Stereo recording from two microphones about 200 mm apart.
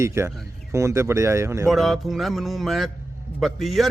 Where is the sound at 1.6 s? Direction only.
Centre (ahead or behind).